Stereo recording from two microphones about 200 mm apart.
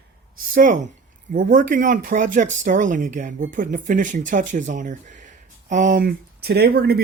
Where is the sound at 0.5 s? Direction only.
40° right (ahead or behind).